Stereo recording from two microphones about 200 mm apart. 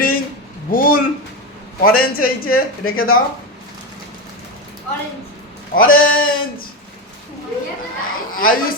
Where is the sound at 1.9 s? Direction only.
90° left.